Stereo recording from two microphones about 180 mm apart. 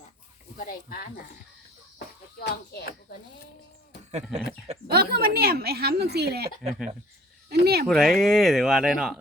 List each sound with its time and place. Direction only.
0.5 s speech: 50° left (ahead or behind)
2.4 s speech: 60° left (ahead or behind)
4.9 s a woman's voice: 60° right (ahead or behind)
6.6 s speech: centre (ahead or behind)
7.5 s speech: 60° right (ahead or behind)
7.9 s speech: centre (ahead or behind)